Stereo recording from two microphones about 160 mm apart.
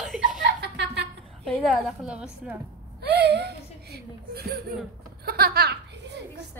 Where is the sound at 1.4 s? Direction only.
5° left (ahead or behind).